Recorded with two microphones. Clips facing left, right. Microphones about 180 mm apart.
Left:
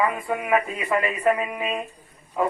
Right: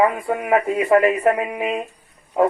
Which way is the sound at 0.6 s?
75° right (ahead or behind).